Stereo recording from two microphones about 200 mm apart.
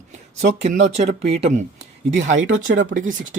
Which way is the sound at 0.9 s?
30° right (ahead or behind).